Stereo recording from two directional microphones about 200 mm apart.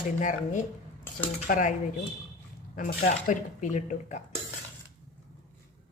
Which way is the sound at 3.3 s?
35° left (ahead or behind).